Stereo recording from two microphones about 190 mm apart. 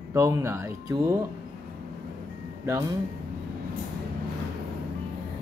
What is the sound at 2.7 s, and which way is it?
Speech, 15° right (ahead or behind).